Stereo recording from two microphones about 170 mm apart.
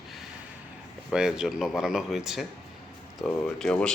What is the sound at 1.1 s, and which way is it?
Speech, 5° right (ahead or behind).